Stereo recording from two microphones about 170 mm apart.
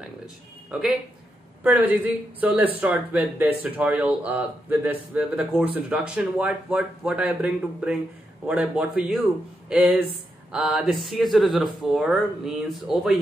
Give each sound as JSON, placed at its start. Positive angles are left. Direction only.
{"t": 0.7, "sound": "speech", "side_deg": 0}